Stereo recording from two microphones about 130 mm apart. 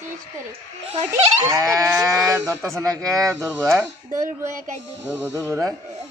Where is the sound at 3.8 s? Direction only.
20° right (ahead or behind).